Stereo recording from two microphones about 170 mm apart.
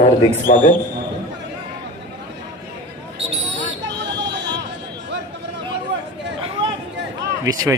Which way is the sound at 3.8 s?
90° right.